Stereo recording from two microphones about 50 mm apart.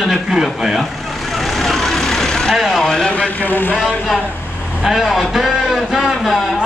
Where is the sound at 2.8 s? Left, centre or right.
Centre.